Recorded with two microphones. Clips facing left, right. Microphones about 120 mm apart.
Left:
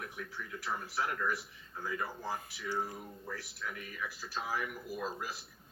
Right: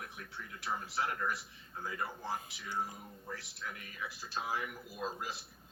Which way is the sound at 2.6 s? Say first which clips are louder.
Left 5 dB; 15° right (ahead or behind).